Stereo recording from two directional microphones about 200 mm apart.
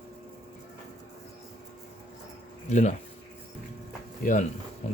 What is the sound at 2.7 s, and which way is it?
Speech, 35° left (ahead or behind).